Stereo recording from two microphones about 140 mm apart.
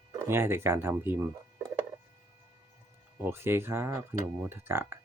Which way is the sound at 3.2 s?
15° right (ahead or behind).